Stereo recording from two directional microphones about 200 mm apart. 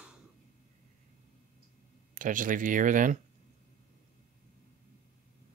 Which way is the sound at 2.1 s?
40° right (ahead or behind).